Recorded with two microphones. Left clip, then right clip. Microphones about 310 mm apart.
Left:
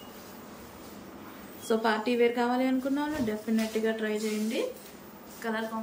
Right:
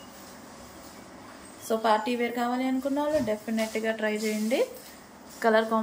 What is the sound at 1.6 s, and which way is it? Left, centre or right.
A woman's voice, centre.